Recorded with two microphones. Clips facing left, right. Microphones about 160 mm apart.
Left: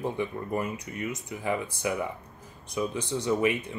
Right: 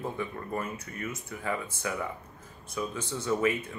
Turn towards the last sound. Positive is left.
turn(degrees=15)  # may be behind; listen again after turning